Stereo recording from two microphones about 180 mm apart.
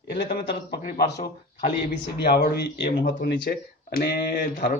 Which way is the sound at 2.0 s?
65° left (ahead or behind).